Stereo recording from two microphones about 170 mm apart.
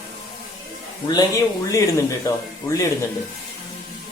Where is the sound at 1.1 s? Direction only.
20° left (ahead or behind).